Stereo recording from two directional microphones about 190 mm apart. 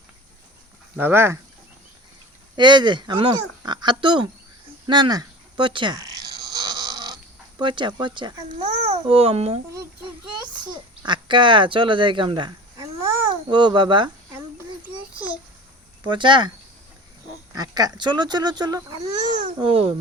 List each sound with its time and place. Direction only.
0.9 s speech: 10° right (ahead or behind)
2.6 s speech: 25° right (ahead or behind)
4.9 s bleat: 20° right (ahead or behind)
7.6 s speech: 25° right (ahead or behind)
8.5 s a child's voice: 35° right (ahead or behind)
16.0 s speech: 25° right (ahead or behind)
17.5 s speech: 20° right (ahead or behind)